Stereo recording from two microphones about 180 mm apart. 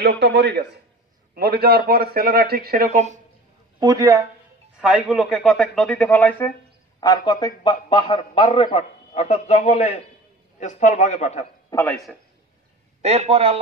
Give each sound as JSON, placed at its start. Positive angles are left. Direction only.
{"t": 0.0, "sound": "a man's voice", "side_deg": -70}
{"t": 1.3, "sound": "a man's voice", "side_deg": -60}
{"t": 2.9, "sound": "a man's voice", "side_deg": -40}
{"t": 3.8, "sound": "speech", "side_deg": -20}
{"t": 4.7, "sound": "a man's voice", "side_deg": -5}
{"t": 7.0, "sound": "a man's voice", "side_deg": 25}
{"t": 11.7, "sound": "speech", "side_deg": 10}
{"t": 13.0, "sound": "a man's voice", "side_deg": -35}